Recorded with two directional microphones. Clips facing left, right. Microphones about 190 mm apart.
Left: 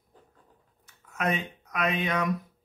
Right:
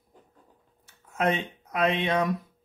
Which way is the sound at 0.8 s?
30° right (ahead or behind).